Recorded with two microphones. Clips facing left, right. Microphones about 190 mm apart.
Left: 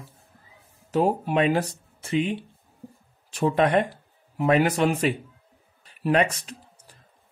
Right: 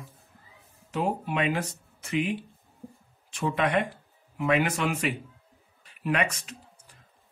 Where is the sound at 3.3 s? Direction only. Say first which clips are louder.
Left 5 dB; 40° left (ahead or behind).